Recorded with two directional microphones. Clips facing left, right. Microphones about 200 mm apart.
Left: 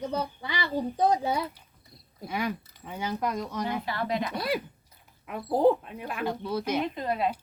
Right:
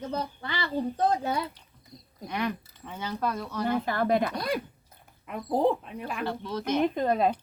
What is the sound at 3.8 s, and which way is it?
Speech, 50° right (ahead or behind).